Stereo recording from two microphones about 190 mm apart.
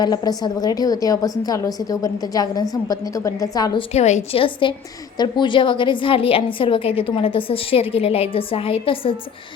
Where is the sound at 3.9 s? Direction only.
35° left (ahead or behind).